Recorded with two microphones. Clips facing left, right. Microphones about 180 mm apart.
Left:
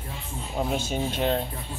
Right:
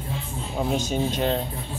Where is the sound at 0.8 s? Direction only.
40° right (ahead or behind).